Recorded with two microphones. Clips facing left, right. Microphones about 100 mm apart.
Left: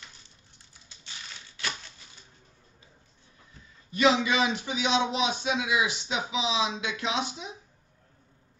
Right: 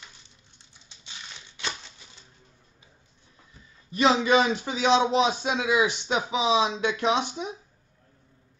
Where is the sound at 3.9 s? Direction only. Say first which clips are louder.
Right 3 dB; 35° right (ahead or behind).